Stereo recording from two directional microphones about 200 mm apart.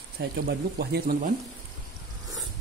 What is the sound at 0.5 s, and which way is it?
Speech, 50° right (ahead or behind).